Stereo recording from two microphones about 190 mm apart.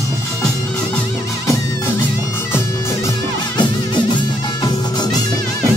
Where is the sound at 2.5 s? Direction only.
15° left (ahead or behind).